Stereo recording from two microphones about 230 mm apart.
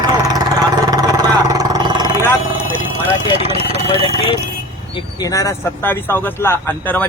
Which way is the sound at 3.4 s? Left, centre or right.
Right.